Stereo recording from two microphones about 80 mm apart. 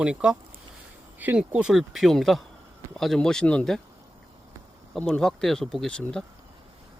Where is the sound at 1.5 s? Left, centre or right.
Centre.